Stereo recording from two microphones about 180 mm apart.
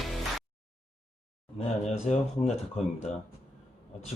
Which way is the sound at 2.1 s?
40° left (ahead or behind).